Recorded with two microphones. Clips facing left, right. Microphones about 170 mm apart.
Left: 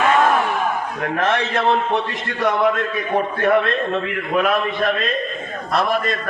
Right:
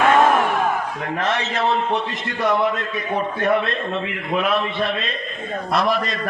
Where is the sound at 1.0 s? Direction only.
55° left (ahead or behind).